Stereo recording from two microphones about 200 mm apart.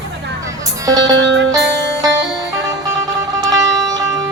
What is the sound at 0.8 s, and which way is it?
Music, 20° right (ahead or behind).